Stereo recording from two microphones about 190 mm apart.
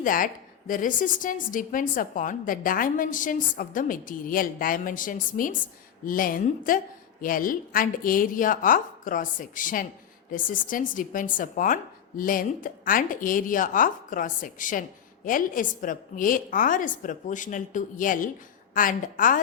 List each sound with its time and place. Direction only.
0.0 s a woman's voice: 45° left (ahead or behind)